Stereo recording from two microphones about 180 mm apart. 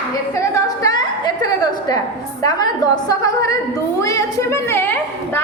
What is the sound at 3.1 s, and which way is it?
A woman's voice, 15° left (ahead or behind).